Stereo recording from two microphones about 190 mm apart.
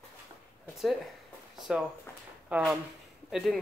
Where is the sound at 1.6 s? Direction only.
Centre (ahead or behind).